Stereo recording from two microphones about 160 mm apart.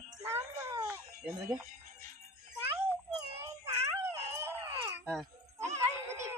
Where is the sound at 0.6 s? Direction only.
20° right (ahead or behind).